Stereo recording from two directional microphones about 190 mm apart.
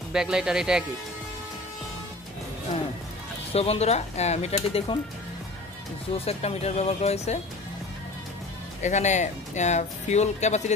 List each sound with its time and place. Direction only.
0.1 s speech: 5° right (ahead or behind)
3.5 s speech: 35° left (ahead or behind)
6.1 s speech: 35° left (ahead or behind)
8.8 s speech: 40° left (ahead or behind)